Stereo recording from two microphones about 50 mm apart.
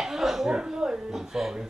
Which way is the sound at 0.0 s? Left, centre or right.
Centre.